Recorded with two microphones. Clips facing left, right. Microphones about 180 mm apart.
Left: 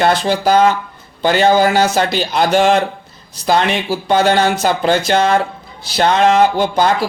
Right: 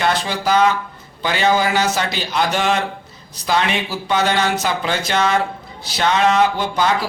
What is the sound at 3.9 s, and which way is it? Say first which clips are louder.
A man's voice: left 8 dB; 35° left (ahead or behind).